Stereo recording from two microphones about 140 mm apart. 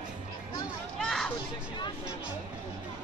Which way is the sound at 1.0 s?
Centre (ahead or behind).